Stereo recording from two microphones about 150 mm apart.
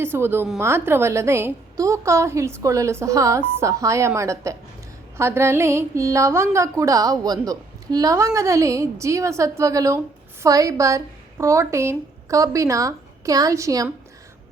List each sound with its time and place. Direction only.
0.0 s a woman's voice: 15° right (ahead or behind)